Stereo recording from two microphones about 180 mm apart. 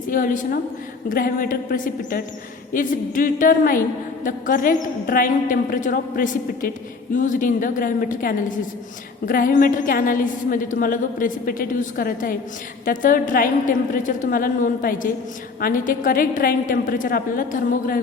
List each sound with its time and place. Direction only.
0.1 s a woman's voice: 50° left (ahead or behind)